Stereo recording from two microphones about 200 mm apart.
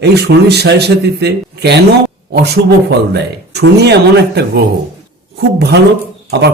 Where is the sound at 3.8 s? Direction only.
55° right (ahead or behind).